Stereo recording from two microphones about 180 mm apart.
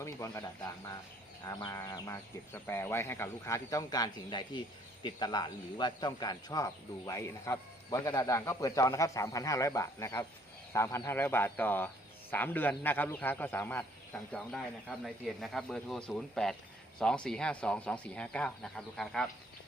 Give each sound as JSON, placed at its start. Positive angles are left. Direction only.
{"t": 0.0, "sound": "speech", "side_deg": 15}
{"t": 1.5, "sound": "speech", "side_deg": 15}